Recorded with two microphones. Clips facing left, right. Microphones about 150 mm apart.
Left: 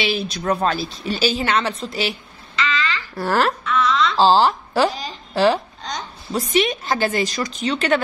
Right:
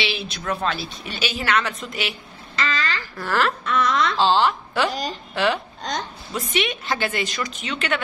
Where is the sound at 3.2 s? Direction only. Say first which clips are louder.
Left 4 dB; 40° left (ahead or behind).